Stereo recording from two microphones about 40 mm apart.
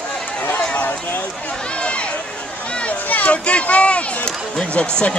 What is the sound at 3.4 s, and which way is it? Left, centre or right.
Speech, left.